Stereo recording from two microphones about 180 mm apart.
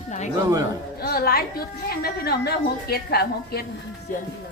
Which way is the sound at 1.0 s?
60° left (ahead or behind).